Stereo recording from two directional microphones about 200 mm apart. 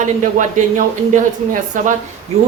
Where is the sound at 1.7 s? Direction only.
40° right (ahead or behind).